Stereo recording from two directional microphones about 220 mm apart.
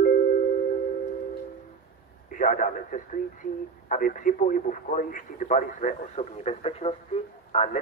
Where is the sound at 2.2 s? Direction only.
35° left (ahead or behind).